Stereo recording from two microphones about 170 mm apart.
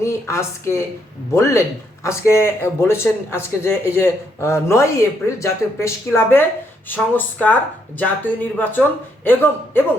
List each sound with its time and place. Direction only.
0.0 s a woman's voice: 15° left (ahead or behind)